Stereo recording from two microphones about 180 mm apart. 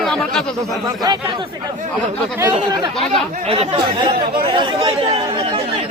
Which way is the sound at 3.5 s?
30° right (ahead or behind).